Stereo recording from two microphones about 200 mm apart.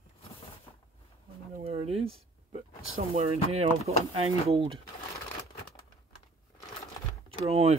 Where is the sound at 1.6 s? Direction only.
30° right (ahead or behind).